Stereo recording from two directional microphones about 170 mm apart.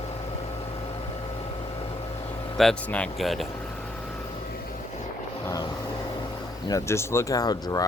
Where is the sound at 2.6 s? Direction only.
5° left (ahead or behind).